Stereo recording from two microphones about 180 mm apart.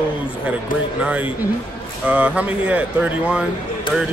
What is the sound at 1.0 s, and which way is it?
A man's voice, 5° right (ahead or behind).